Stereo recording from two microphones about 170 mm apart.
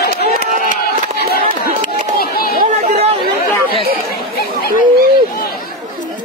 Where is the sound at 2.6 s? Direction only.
40° right (ahead or behind).